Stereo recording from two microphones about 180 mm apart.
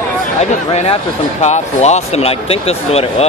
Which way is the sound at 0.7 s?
35° left (ahead or behind).